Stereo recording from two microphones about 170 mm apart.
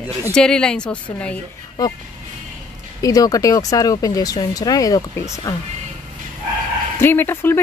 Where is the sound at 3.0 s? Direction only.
20° left (ahead or behind).